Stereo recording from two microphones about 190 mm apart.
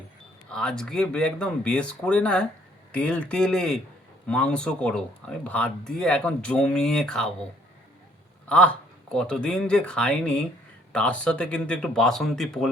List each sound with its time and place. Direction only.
0.5 s speech: 5° left (ahead or behind)
8.4 s speech: 5° left (ahead or behind)